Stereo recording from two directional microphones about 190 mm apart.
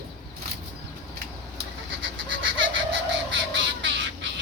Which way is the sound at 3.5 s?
70° right (ahead or behind).